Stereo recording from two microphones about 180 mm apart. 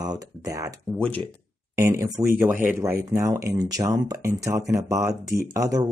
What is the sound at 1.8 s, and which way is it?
Speech, 15° right (ahead or behind).